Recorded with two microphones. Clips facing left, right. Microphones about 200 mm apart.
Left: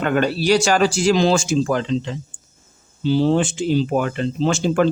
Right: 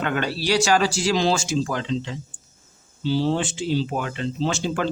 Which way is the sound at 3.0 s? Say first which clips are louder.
Left 5 dB; 50° left (ahead or behind).